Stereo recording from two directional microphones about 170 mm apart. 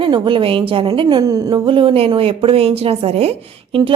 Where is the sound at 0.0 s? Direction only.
30° right (ahead or behind).